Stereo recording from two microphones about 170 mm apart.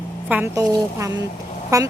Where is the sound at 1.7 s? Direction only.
20° right (ahead or behind).